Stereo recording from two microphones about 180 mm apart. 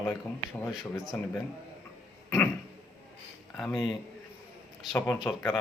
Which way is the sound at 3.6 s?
20° left (ahead or behind).